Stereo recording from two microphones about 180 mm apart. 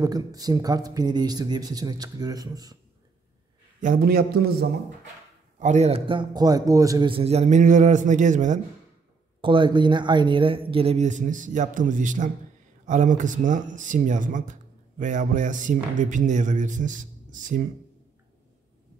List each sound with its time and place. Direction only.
0.0 s speech: 20° right (ahead or behind)
3.8 s a man's voice: 55° right (ahead or behind)
5.6 s a man's voice: 40° right (ahead or behind)
9.4 s a man's voice: 25° right (ahead or behind); by 17.6 s 45° right (ahead or behind)